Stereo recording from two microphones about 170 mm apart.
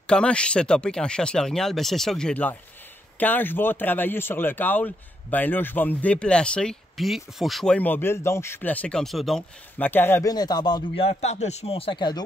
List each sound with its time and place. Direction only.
0.0 s a man's voice: 5° left (ahead or behind); by 11.1 s 25° left (ahead or behind)
11.1 s speech: 40° left (ahead or behind)